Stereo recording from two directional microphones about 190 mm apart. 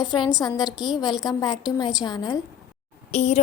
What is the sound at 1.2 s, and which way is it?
A woman's voice, 20° left (ahead or behind).